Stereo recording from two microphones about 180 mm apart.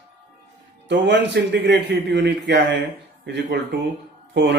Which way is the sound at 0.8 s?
75° right (ahead or behind).